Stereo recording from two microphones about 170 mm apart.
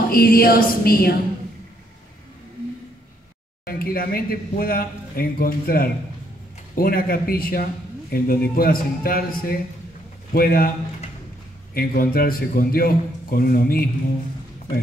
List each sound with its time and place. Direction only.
0.1 s speech: 60° left (ahead or behind)
3.6 s speech: 60° left (ahead or behind)
11.7 s speech: 60° left (ahead or behind)